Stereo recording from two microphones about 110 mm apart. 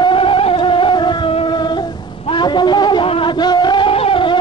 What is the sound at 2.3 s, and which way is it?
Music, 45° left (ahead or behind).